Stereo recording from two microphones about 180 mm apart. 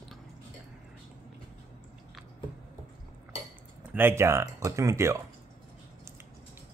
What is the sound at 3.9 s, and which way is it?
Speech, 10° right (ahead or behind).